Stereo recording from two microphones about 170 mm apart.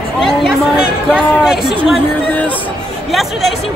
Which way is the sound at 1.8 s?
10° left (ahead or behind).